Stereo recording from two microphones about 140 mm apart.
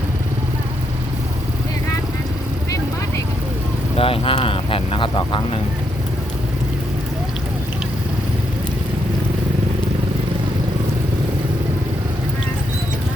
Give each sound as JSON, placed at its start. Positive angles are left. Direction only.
{"t": 3.9, "sound": "speech", "side_deg": 40}